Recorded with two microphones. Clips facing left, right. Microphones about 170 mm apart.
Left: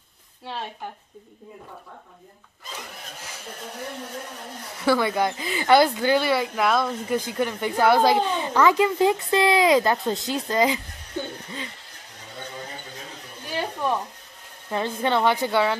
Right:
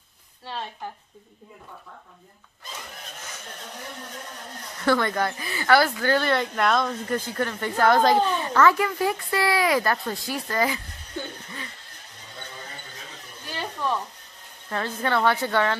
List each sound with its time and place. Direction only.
3.2 s snicker: 10° left (ahead or behind)
4.7 s speech: 5° left (ahead or behind)
14.7 s speech: 15° left (ahead or behind)